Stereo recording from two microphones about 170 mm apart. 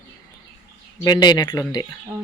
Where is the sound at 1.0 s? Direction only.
25° left (ahead or behind).